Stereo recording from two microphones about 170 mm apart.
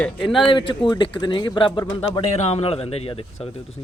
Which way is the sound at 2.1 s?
40° left (ahead or behind).